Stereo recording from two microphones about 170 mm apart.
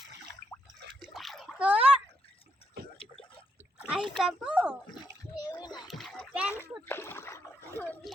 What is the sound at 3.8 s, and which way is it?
Speech, 5° right (ahead or behind).